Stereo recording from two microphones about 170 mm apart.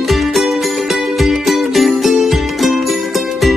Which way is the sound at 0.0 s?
Centre (ahead or behind).